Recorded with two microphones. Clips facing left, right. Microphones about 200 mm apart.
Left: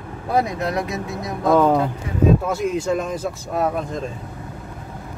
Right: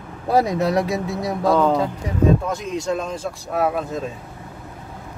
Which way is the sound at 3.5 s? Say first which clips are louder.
Right 1 dB; 5° right (ahead or behind).